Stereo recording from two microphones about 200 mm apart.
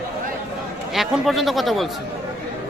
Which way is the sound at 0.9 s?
Centre (ahead or behind).